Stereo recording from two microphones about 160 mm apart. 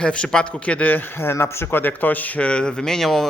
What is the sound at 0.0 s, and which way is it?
A man's voice, 5° left (ahead or behind).